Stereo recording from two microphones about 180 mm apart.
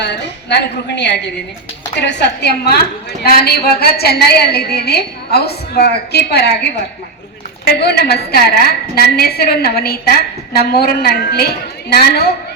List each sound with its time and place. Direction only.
0.0 s a woman's voice: 70° left (ahead or behind)